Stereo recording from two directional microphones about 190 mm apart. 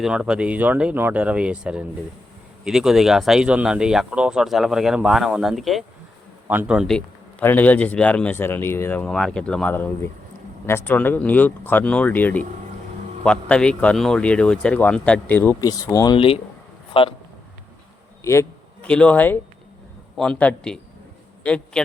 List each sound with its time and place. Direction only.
0.0 s speech: 5° right (ahead or behind); by 16.1 s 15° left (ahead or behind)
16.1 s a man's voice: 30° left (ahead or behind)
18.2 s a man's voice: 15° left (ahead or behind)